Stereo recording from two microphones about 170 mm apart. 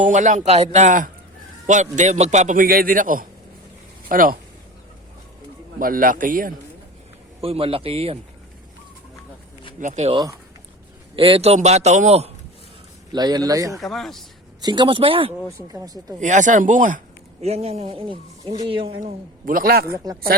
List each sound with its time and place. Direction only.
0.0 s a man's voice: 45° right (ahead or behind)
5.8 s a man's voice: 55° right (ahead or behind)
7.4 s speech: 35° right (ahead or behind)
9.8 s speech: 40° right (ahead or behind)
11.2 s speech: 35° right (ahead or behind)
13.1 s speech: 25° right (ahead or behind)
13.7 s speech: centre (ahead or behind)
14.6 s speech: 25° right (ahead or behind)
15.7 s speech: 20° right (ahead or behind)
16.2 s a man's voice: 45° right (ahead or behind)
17.4 s speech: 35° right (ahead or behind)
19.5 s a man's voice: 55° right (ahead or behind)